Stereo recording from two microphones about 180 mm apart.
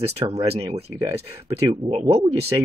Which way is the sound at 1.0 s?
20° right (ahead or behind).